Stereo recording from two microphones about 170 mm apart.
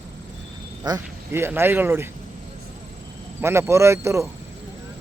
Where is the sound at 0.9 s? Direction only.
20° right (ahead or behind).